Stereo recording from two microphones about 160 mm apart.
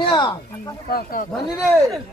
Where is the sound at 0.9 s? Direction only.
65° left (ahead or behind).